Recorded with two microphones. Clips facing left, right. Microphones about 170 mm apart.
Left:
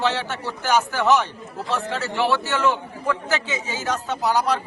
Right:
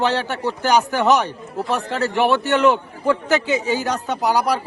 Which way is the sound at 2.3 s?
20° right (ahead or behind).